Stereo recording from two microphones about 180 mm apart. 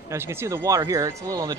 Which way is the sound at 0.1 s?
15° right (ahead or behind).